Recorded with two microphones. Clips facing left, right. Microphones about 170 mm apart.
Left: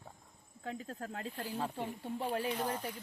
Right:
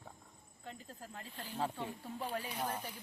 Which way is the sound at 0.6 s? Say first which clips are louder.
Left 8 dB; 90° left.